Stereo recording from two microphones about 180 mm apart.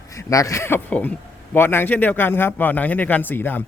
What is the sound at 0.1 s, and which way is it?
A man's voice, 15° left (ahead or behind).